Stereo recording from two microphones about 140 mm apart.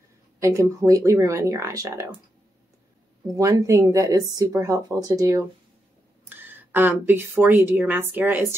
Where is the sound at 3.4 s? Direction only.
25° right (ahead or behind).